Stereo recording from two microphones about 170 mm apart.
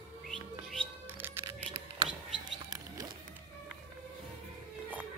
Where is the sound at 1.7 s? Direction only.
30° right (ahead or behind).